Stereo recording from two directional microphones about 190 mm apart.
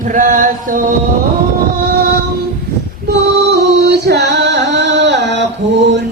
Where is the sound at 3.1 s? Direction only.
65° right (ahead or behind).